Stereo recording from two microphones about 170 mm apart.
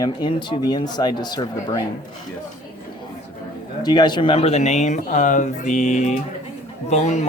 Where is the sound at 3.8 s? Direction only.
25° left (ahead or behind).